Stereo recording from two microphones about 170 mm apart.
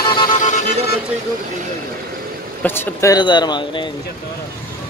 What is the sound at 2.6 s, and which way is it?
Speech, 15° left (ahead or behind).